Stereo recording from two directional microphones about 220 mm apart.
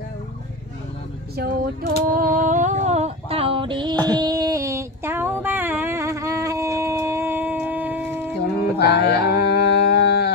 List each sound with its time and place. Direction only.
1.3 s speech: 45° right (ahead or behind)
2.0 s a sound: 40° right (ahead or behind); by 8.3 s 10° right (ahead or behind)
8.4 s mantra: 45° left (ahead or behind)